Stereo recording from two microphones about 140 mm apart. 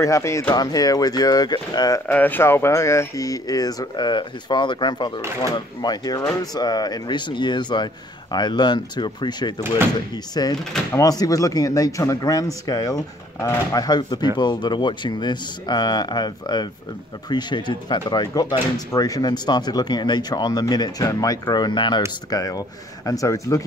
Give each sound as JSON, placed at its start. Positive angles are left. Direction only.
{"t": 0.0, "sound": "speech", "side_deg": 20}
{"t": 2.0, "sound": "speech", "side_deg": 10}